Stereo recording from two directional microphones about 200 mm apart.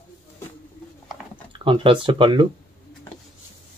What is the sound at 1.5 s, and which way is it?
Speech, 25° right (ahead or behind).